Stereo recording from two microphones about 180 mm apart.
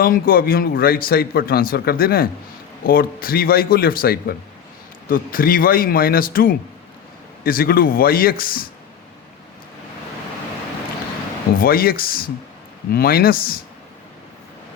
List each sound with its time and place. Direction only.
0.0 s speech: 55° left (ahead or behind)
11.6 s speech: 55° left (ahead or behind)